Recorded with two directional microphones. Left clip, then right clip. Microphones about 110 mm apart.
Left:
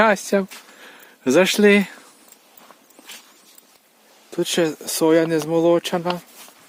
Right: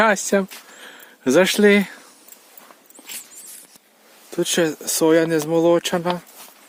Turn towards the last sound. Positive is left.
turn(degrees=-25)  # may be behind; listen again after turning